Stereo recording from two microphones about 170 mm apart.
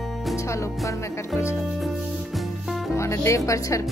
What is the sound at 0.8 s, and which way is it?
Speech, 15° left (ahead or behind).